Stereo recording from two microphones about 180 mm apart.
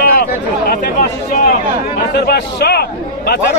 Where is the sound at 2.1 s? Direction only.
65° left (ahead or behind).